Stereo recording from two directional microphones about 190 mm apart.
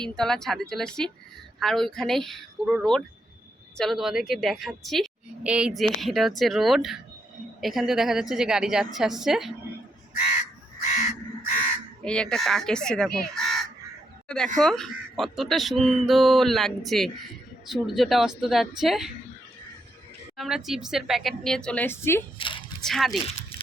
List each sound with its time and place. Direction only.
0.0 s a woman's voice: 5° left (ahead or behind)
12.0 s a woman's voice: 5° left (ahead or behind)
20.3 s a woman's voice: centre (ahead or behind)
22.4 s a child's voice: 25° left (ahead or behind)
22.8 s a child's voice: centre (ahead or behind)